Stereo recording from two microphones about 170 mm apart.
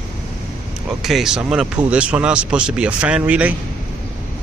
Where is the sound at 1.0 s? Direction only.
Centre (ahead or behind).